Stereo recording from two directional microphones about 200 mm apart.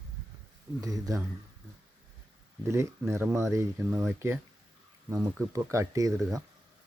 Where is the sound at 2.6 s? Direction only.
15° right (ahead or behind).